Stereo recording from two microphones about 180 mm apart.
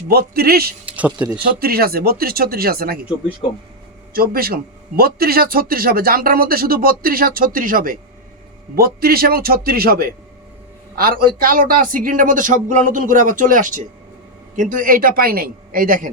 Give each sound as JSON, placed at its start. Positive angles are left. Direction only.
{"t": 0.1, "sound": "a man's voice", "side_deg": -60}
{"t": 0.9, "sound": "speech", "side_deg": -10}
{"t": 1.5, "sound": "a man's voice", "side_deg": -60}
{"t": 4.1, "sound": "a man's voice", "side_deg": -55}
{"t": 11.2, "sound": "speech", "side_deg": -55}